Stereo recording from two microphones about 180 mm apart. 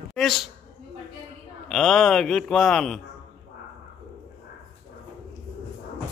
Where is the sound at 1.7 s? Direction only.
Centre (ahead or behind).